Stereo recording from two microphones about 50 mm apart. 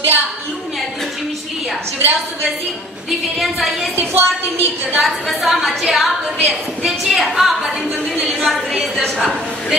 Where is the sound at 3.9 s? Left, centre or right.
Right.